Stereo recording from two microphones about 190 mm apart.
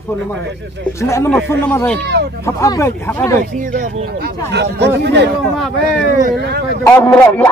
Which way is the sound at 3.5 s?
40° right (ahead or behind).